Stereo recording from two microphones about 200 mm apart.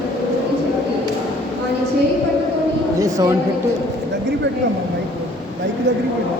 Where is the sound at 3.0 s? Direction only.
15° right (ahead or behind).